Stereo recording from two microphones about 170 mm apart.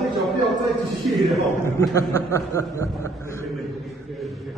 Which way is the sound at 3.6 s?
Centre (ahead or behind).